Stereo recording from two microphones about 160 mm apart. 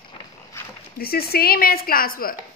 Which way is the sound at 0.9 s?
70° left (ahead or behind).